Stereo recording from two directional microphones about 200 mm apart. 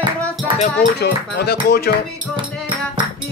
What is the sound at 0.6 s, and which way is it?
Speech, 50° left (ahead or behind).